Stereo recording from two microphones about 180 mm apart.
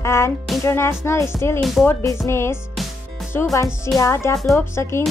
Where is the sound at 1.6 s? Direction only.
Centre (ahead or behind).